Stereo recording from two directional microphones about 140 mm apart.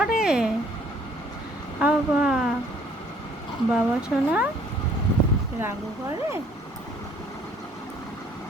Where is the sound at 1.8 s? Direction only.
5° right (ahead or behind).